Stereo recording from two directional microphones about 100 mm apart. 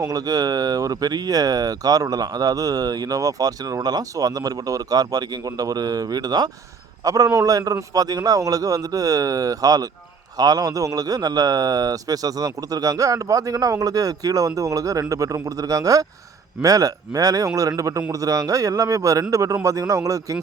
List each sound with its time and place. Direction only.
0.0 s speech: 40° right (ahead or behind)